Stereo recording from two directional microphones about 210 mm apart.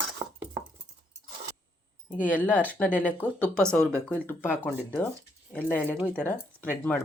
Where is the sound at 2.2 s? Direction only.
5° left (ahead or behind).